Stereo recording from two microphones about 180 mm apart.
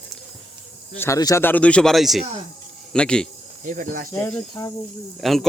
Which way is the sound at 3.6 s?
45° right (ahead or behind).